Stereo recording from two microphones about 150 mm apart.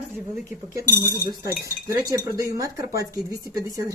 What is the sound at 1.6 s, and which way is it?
Speech, 20° right (ahead or behind).